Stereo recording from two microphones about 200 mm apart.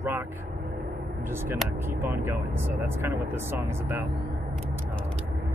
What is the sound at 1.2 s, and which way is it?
Speech, 10° right (ahead or behind).